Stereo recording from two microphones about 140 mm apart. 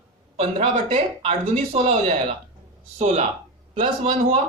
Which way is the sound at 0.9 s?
45° right (ahead or behind).